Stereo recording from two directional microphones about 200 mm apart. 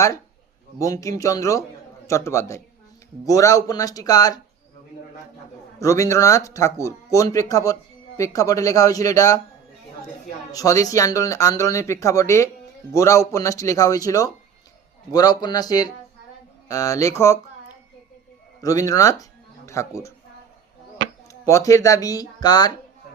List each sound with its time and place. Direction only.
0.8 s speech: 15° left (ahead or behind)
5.8 s speech: 15° left (ahead or behind)
10.5 s speech: 15° left (ahead or behind)
18.6 s speech: 15° left (ahead or behind)
21.4 s speech: 15° left (ahead or behind)